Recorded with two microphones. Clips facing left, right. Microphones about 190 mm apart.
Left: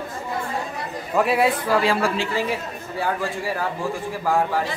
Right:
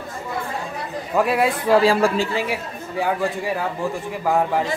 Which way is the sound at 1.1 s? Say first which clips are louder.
Right 1 dB; centre (ahead or behind).